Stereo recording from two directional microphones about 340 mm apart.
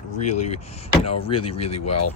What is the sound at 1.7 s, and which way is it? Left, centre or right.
Speech, left.